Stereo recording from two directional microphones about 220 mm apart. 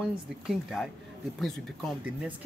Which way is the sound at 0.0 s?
Centre (ahead or behind).